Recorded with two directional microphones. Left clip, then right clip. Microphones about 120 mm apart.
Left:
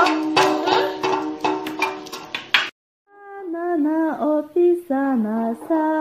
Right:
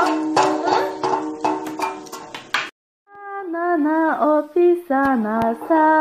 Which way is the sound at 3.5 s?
15° left (ahead or behind).